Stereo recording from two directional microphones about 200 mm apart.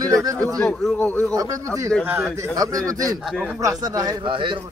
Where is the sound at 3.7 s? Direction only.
20° right (ahead or behind).